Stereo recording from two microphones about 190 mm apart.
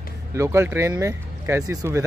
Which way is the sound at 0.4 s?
15° right (ahead or behind).